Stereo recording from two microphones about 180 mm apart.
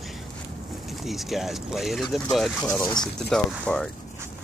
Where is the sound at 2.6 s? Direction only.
15° left (ahead or behind).